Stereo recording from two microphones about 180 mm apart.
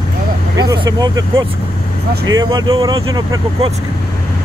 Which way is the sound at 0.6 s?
20° right (ahead or behind).